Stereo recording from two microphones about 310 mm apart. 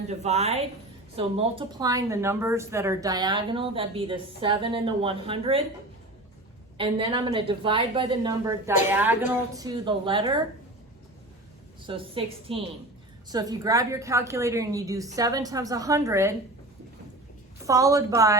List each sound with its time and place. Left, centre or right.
0.1 s a woman's voice: right
6.7 s a woman's voice: centre
11.9 s a woman's voice: centre
17.7 s a woman's voice: centre